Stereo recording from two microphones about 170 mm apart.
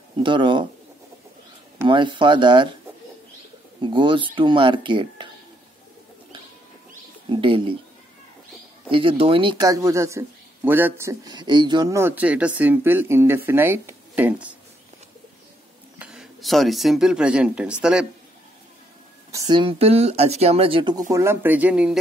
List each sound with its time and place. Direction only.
0.2 s speech: 30° right (ahead or behind)
1.9 s speech: 30° right (ahead or behind)
3.8 s speech: 30° right (ahead or behind)
7.2 s speech: 30° right (ahead or behind)
8.9 s speech: 30° right (ahead or behind); by 14.5 s 10° right (ahead or behind)
16.0 s speech: 5° right (ahead or behind)
19.3 s speech: 25° right (ahead or behind)
21.1 s speech: 15° right (ahead or behind)